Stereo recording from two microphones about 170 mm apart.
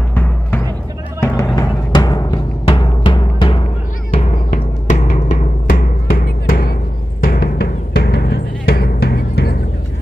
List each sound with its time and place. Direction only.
1.2 s timpani: 15° left (ahead or behind)
4.5 s timpani: 45° left (ahead or behind)
7.2 s music: 60° left (ahead or behind)